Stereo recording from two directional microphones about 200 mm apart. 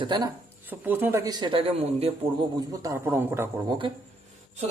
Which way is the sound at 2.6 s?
15° right (ahead or behind).